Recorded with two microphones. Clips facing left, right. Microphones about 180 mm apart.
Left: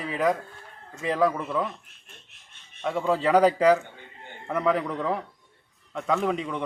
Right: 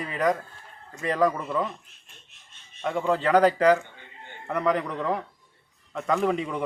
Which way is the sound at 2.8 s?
Centre (ahead or behind).